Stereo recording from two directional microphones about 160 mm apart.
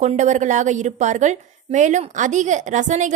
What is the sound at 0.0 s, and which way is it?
A woman's voice, 50° right (ahead or behind).